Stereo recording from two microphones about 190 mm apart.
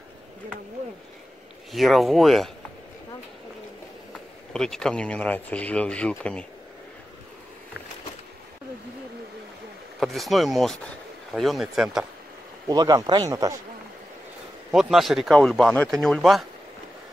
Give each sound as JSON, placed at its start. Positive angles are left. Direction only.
{"t": 1.7, "sound": "speech", "side_deg": 0}
{"t": 4.6, "sound": "speech", "side_deg": 5}
{"t": 9.9, "sound": "speech", "side_deg": 0}
{"t": 12.6, "sound": "speech", "side_deg": -20}
{"t": 14.7, "sound": "speech", "side_deg": 0}